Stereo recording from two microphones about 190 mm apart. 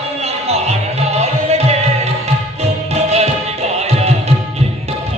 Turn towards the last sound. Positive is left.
turn(degrees=-35)  # may be behind; listen again after turning